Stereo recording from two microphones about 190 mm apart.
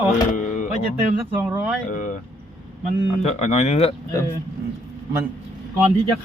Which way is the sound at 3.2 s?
35° left (ahead or behind).